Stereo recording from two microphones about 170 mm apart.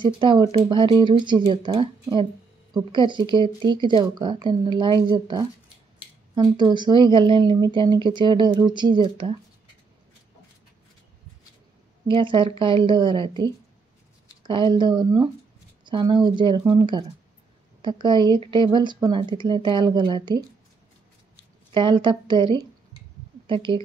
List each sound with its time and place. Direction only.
0.0 s a woman's voice: 30° right (ahead or behind)
12.1 s a woman's voice: 30° right (ahead or behind)
21.7 s a woman's voice: 30° right (ahead or behind)